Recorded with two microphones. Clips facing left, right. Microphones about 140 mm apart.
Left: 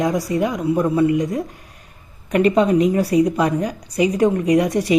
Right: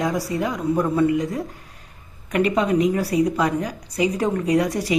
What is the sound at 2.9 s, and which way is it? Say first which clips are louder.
A woman's voice: left 4 dB; 20° left (ahead or behind).